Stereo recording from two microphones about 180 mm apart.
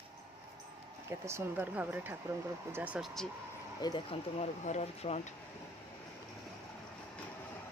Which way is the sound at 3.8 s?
30° left (ahead or behind).